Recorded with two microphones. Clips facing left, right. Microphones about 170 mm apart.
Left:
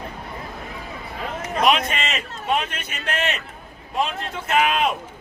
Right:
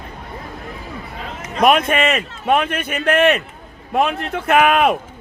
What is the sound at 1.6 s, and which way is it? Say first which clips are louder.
Speech: right 7 dB; 55° right (ahead or behind).